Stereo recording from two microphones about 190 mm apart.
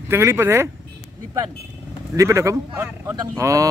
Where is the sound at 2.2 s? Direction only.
15° right (ahead or behind).